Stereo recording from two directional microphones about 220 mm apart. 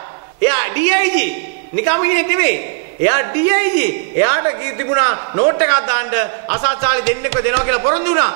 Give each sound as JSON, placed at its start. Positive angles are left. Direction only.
{"t": 0.4, "sound": "a man's voice", "side_deg": -15}